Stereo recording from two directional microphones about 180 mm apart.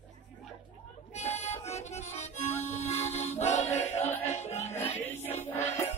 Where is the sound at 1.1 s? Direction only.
40° left (ahead or behind).